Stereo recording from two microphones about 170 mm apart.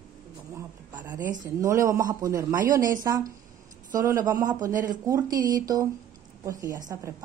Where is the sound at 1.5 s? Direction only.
15° right (ahead or behind).